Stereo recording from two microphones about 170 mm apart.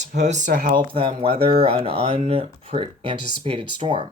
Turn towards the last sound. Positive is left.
turn(degrees=-30)  # may be behind; listen again after turning